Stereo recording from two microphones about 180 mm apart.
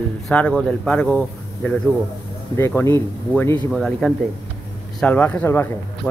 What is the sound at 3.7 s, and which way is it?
Speech, centre (ahead or behind).